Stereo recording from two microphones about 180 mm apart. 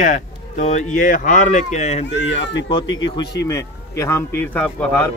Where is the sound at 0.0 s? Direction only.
40° left (ahead or behind).